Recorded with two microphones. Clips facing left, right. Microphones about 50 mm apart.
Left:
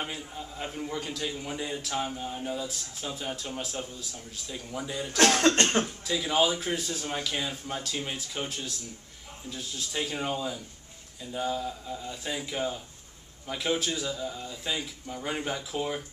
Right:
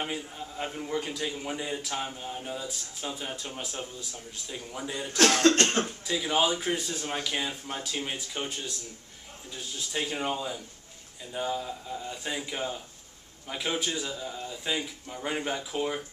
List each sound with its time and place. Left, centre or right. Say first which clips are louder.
0.0 s a man's voice: right 2 dB; centre
5.6 s speech: left 1 dB; left
6.0 s a man's voice: even; centre